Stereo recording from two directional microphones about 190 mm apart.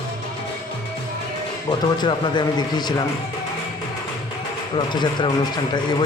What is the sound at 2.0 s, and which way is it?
Speech, 25° left (ahead or behind).